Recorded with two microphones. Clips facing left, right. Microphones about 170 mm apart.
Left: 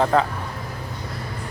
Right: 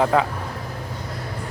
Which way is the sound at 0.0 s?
5° right (ahead or behind).